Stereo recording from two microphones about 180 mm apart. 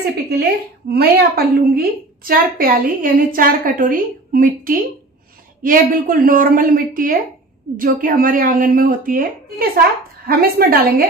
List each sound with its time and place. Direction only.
0.3 s a woman's voice: 60° right (ahead or behind)